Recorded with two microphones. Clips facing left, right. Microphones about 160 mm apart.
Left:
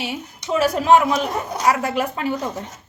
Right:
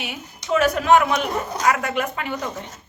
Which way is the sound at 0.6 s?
30° left (ahead or behind).